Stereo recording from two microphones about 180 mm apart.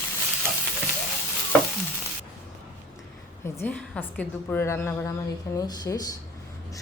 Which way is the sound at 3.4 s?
10° left (ahead or behind).